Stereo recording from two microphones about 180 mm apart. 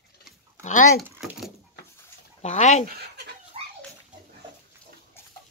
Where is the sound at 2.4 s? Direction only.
40° left (ahead or behind).